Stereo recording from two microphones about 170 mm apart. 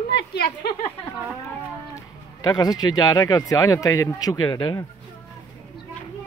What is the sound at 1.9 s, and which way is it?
Speech, 20° left (ahead or behind).